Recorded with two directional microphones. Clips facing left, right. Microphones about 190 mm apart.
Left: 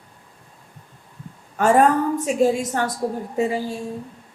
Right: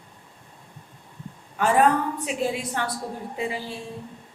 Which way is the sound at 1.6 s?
45° left (ahead or behind).